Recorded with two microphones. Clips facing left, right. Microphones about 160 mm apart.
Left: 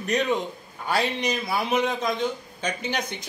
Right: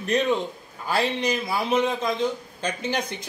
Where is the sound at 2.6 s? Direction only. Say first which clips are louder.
Right 1 dB; 30° right (ahead or behind).